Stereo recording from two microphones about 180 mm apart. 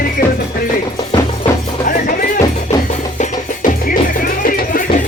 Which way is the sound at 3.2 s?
45° left (ahead or behind).